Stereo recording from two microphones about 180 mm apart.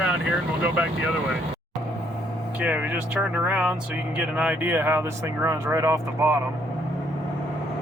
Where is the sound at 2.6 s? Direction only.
5° right (ahead or behind).